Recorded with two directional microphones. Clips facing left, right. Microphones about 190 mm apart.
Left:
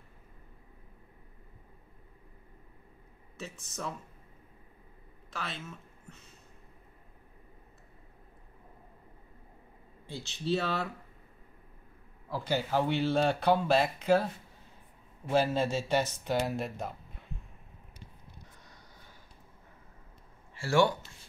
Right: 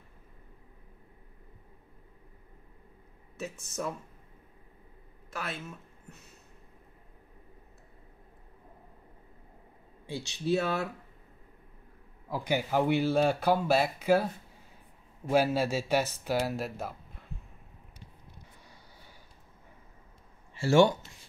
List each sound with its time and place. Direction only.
3.3 s speech: 10° right (ahead or behind)
5.3 s speech: 5° right (ahead or behind)
10.1 s speech: 70° right (ahead or behind)
10.4 s speech: 10° right (ahead or behind)
12.3 s speech: 15° right (ahead or behind)
15.3 s speech: 10° right (ahead or behind)
20.5 s speech: 20° right (ahead or behind)